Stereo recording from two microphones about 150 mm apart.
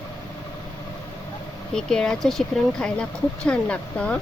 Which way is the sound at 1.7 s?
5° left (ahead or behind).